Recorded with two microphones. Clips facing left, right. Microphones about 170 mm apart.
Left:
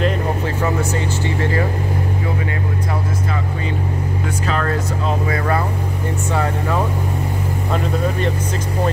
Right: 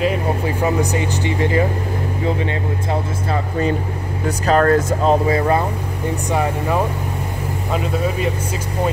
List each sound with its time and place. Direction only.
0.6 s speech: 15° right (ahead or behind)
4.5 s speech: 50° right (ahead or behind)
6.3 s speech: 15° right (ahead or behind)